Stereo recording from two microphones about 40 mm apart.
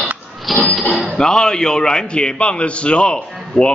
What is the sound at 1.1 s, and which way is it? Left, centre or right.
A man's voice, centre.